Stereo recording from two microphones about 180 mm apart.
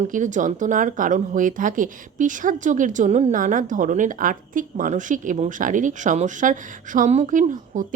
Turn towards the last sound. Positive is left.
turn(degrees=-45)  # may be behind; listen again after turning